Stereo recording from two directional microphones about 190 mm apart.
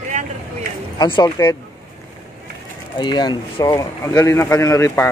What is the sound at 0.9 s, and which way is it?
Speech, 25° left (ahead or behind).